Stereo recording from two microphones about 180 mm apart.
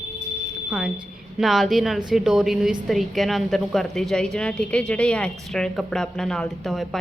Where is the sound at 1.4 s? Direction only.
Centre (ahead or behind).